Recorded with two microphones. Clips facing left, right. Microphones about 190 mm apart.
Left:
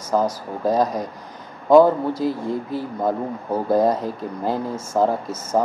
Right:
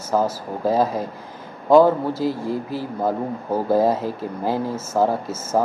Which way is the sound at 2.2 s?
25° left (ahead or behind).